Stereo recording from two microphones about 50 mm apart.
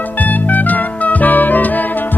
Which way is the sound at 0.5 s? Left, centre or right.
Left.